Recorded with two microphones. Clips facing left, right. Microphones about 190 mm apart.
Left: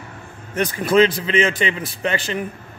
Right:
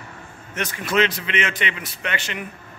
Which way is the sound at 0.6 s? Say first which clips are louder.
Left 6 dB; 35° left (ahead or behind).